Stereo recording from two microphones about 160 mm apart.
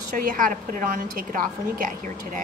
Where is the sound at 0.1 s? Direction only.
60° right (ahead or behind).